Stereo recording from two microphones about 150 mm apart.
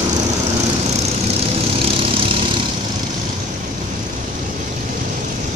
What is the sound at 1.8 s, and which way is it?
Lawn mower, 40° right (ahead or behind).